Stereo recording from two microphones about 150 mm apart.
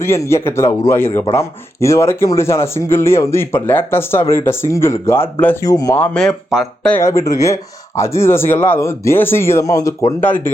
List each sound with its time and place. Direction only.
0.0 s speech: 15° left (ahead or behind)
5.6 s speech: 25° left (ahead or behind)
6.0 s speech: 5° left (ahead or behind)
6.9 s speech: 20° left (ahead or behind)